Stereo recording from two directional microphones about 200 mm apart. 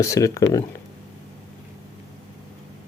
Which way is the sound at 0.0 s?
15° left (ahead or behind).